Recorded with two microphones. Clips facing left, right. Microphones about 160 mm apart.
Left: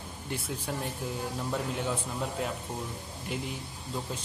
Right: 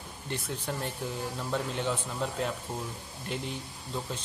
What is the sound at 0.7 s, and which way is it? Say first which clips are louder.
Speech: even; 5° left (ahead or behind).